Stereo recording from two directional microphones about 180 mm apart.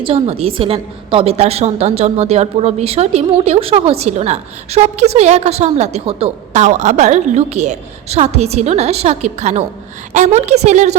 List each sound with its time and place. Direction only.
0.0 s a woman's voice: 35° right (ahead or behind)